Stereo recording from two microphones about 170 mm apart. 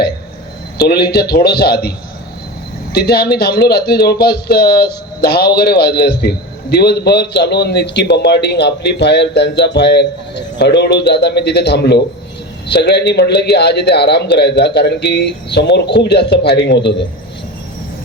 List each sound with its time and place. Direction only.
0.8 s speech: 70° left (ahead or behind)
2.9 s a man's voice: 70° left (ahead or behind); by 16.9 s 90° left